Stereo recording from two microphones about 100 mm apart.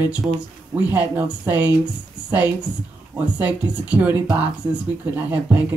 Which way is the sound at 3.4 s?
15° right (ahead or behind).